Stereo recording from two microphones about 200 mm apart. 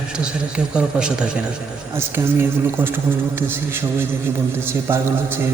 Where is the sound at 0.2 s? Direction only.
5° right (ahead or behind).